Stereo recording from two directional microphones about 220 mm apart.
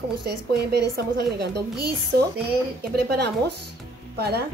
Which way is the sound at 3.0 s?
50° right (ahead or behind).